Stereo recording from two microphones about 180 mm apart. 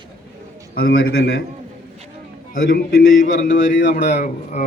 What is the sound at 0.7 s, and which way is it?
Speech, 70° left (ahead or behind).